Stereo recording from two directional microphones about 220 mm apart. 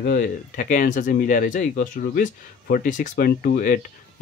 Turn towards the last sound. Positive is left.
turn(degrees=40)  # may be behind; listen again after turning